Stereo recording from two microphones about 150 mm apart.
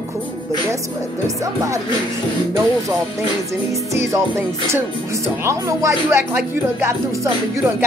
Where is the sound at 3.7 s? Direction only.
20° right (ahead or behind).